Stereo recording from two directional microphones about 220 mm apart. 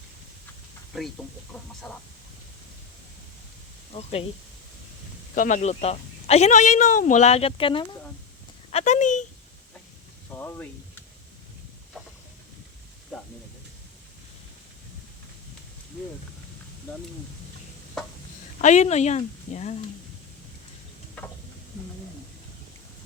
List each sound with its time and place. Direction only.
0.9 s speech: centre (ahead or behind)
5.3 s speech: 35° left (ahead or behind)
8.7 s speech: 35° left (ahead or behind)
10.3 s speech: 10° left (ahead or behind)
13.1 s a sound: centre (ahead or behind)
18.6 s speech: 30° left (ahead or behind)
21.2 s a sound: 5° left (ahead or behind)